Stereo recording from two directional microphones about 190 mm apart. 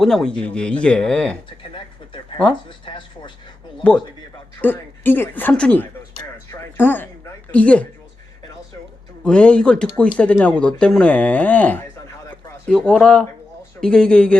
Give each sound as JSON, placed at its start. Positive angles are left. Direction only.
{"t": 0.0, "sound": "speech", "side_deg": 5}
{"t": 1.5, "sound": "speech", "side_deg": 25}
{"t": 4.6, "sound": "speech", "side_deg": 10}
{"t": 9.2, "sound": "speech", "side_deg": 5}
{"t": 12.3, "sound": "a sound", "side_deg": 5}
{"t": 13.8, "sound": "speech", "side_deg": 5}